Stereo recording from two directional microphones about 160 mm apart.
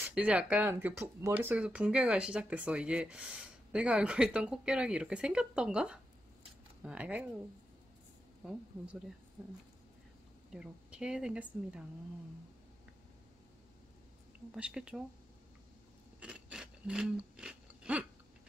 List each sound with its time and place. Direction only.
0.0 s speech: 5° right (ahead or behind)
8.5 s speech: 5° right (ahead or behind)
10.5 s speech: 5° right (ahead or behind)
14.5 s speech: 5° right (ahead or behind)
16.2 s a sound: 5° right (ahead or behind)